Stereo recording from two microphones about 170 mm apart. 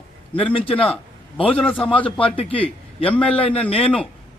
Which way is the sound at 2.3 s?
35° left (ahead or behind).